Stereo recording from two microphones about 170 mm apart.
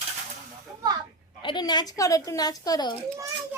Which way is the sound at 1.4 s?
30° left (ahead or behind).